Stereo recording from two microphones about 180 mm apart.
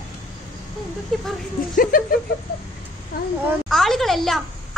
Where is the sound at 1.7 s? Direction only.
50° left (ahead or behind).